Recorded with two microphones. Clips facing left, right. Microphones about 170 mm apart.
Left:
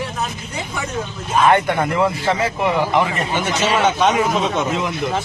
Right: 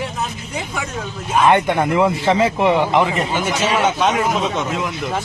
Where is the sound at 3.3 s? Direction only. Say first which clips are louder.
Left 3 dB; 10° right (ahead or behind).